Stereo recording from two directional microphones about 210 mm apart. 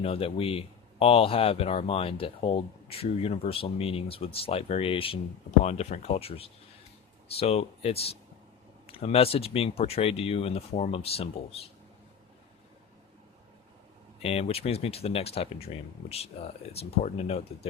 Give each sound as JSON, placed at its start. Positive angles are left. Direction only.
{"t": 0.0, "sound": "speech", "side_deg": 25}
{"t": 14.2, "sound": "speech", "side_deg": 30}